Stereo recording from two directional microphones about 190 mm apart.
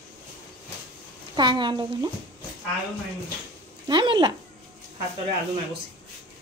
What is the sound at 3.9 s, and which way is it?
Speech, 25° right (ahead or behind).